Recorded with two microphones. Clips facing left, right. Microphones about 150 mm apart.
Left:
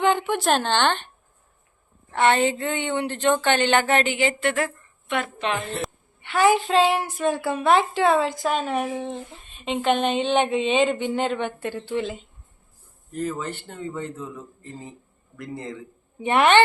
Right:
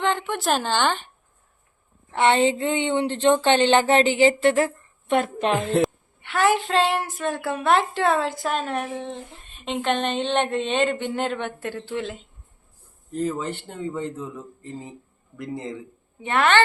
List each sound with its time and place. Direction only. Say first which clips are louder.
0.0 s a woman's voice: left 3 dB; 5° left (ahead or behind)
2.1 s speech: right 1 dB; 20° right (ahead or behind); by 5.5 s 45° right (ahead or behind)
5.8 s a woman's voice: right 9 dB; centre (ahead or behind)
13.1 s speech: right 2 dB; 20° right (ahead or behind)
15.4 s speech: right 2 dB; 20° right (ahead or behind)
16.2 s a woman's voice: left 3 dB; 15° left (ahead or behind)